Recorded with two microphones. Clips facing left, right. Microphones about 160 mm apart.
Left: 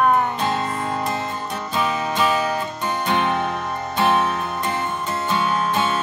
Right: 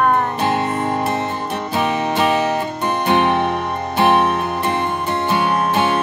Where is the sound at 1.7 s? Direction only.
60° right (ahead or behind).